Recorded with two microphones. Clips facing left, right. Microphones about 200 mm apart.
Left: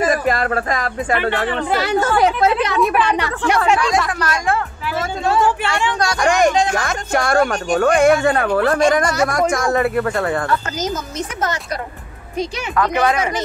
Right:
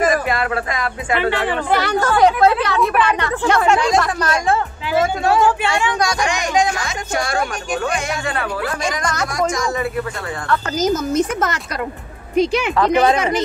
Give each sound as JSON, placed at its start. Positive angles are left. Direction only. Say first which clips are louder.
{"t": 0.3, "sound": "music", "louder": "left 2 dB", "side_deg": 40}
{"t": 1.7, "sound": "speech", "louder": "even", "side_deg": 25}
{"t": 4.9, "sound": "speech", "louder": "right 3 dB", "side_deg": -15}
{"t": 6.2, "sound": "speech", "louder": "left 7 dB", "side_deg": 55}
{"t": 9.0, "sound": "speech", "louder": "left 5 dB", "side_deg": 5}
{"t": 9.3, "sound": "speech", "louder": "left 3 dB", "side_deg": 60}
{"t": 12.7, "sound": "speech", "louder": "right 1 dB", "side_deg": -25}